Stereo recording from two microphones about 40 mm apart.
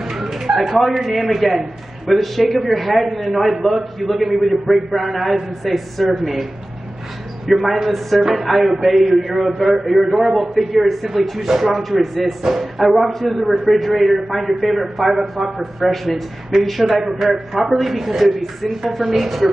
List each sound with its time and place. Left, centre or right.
0.1 s a sound: centre
0.5 s a man's voice: centre
7.4 s a man's voice: centre